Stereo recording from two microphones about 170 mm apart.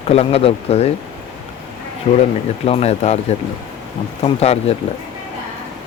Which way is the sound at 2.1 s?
40° left (ahead or behind).